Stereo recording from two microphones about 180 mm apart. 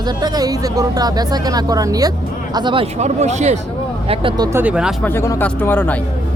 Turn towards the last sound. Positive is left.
turn(degrees=10)  # may be behind; listen again after turning